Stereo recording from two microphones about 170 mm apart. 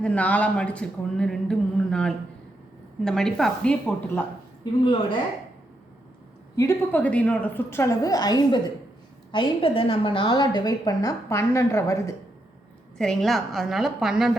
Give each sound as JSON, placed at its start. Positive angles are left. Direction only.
{"t": 0.0, "sound": "a woman's voice", "side_deg": 10}
{"t": 6.6, "sound": "a woman's voice", "side_deg": 15}
{"t": 13.0, "sound": "a woman's voice", "side_deg": 0}